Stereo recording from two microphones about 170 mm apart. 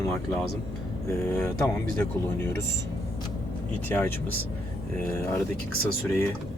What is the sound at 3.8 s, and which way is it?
Speech, 10° left (ahead or behind).